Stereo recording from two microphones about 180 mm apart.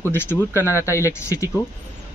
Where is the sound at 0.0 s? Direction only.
10° left (ahead or behind).